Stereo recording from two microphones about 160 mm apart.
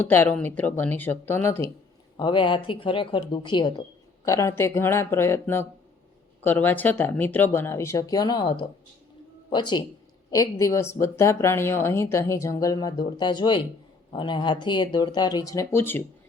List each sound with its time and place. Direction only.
0.0 s a woman's voice: 15° left (ahead or behind)
2.1 s speech: 30° left (ahead or behind)
4.3 s a woman's voice: 20° left (ahead or behind)